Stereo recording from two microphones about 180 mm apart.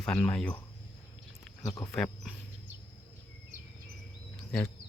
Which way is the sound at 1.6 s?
20° left (ahead or behind).